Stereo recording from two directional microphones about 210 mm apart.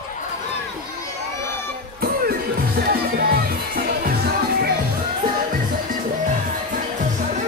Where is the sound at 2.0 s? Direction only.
45° right (ahead or behind).